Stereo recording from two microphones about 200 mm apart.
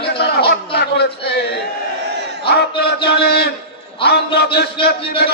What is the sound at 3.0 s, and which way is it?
A man's voice, 55° left (ahead or behind).